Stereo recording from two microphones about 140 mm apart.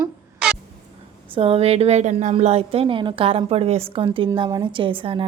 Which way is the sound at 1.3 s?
40° right (ahead or behind).